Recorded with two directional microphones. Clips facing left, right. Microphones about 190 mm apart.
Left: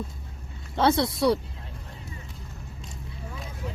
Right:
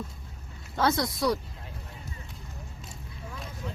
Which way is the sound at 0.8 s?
30° left (ahead or behind).